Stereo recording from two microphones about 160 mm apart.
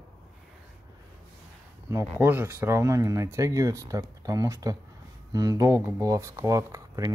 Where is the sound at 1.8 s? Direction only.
15° right (ahead or behind).